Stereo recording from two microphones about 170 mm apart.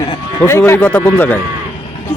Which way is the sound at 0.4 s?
15° left (ahead or behind).